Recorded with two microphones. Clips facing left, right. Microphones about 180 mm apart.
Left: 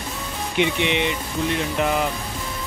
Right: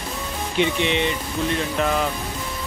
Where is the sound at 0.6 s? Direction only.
15° left (ahead or behind).